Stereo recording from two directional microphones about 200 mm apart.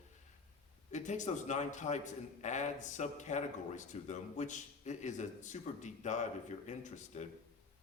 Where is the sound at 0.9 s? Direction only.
35° left (ahead or behind).